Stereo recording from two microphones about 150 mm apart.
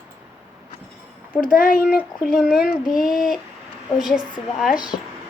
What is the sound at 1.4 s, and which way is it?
Speech, 70° left (ahead or behind).